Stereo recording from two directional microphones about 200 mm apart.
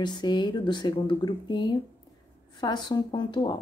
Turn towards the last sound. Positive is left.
turn(degrees=20)  # may be behind; listen again after turning